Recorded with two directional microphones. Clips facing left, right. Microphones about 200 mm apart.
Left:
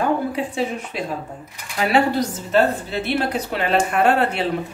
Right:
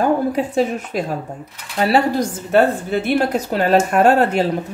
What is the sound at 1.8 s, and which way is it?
Speech, 35° right (ahead or behind).